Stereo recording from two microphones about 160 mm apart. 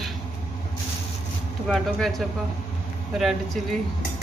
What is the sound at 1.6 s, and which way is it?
Speech, centre (ahead or behind).